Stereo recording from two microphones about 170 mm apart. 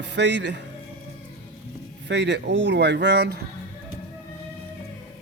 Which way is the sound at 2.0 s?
90° right.